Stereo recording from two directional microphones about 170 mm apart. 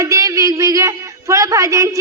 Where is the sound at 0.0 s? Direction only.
20° right (ahead or behind).